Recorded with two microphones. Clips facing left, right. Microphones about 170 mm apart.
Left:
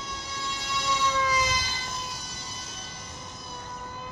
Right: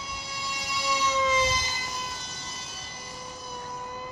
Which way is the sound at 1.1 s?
25° right (ahead or behind).